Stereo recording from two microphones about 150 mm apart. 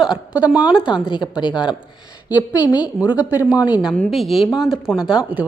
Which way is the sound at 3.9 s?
5° left (ahead or behind).